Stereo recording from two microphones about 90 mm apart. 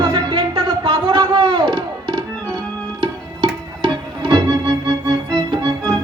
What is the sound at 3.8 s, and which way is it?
Music, 60° right (ahead or behind).